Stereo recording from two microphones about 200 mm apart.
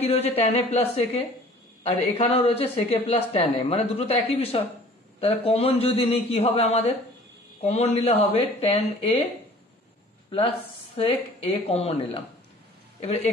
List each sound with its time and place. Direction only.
0.0 s a woman's voice: 30° left (ahead or behind)
11.0 s a man's voice: 30° left (ahead or behind)